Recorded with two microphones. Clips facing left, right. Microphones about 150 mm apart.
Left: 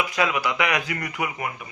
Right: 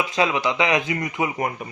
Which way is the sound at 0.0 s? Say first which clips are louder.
Right 2 dB; 25° right (ahead or behind).